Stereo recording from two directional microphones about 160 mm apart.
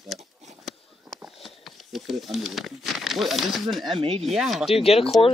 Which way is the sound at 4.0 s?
35° right (ahead or behind).